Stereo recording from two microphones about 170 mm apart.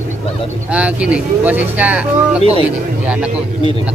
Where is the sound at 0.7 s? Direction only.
5° right (ahead or behind).